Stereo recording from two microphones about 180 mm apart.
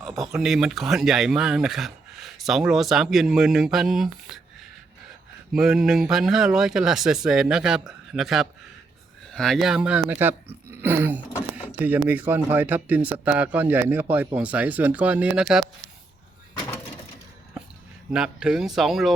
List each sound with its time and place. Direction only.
0.0 s speech: centre (ahead or behind)
5.5 s a man's voice: 5° right (ahead or behind)
16.6 s door: 20° left (ahead or behind)
18.1 s speech: 5° right (ahead or behind)